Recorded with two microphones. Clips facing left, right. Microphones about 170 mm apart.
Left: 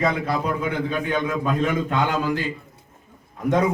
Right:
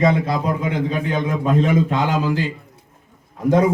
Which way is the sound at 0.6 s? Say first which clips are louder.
Right 3 dB; 30° right (ahead or behind).